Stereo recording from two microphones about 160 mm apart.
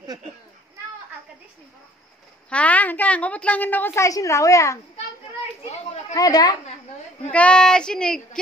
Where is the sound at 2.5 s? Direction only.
10° left (ahead or behind).